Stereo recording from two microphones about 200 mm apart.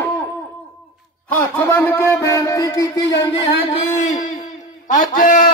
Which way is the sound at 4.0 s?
35° left (ahead or behind).